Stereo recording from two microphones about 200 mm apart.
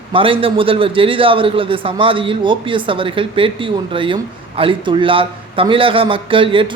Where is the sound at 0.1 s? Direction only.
25° right (ahead or behind).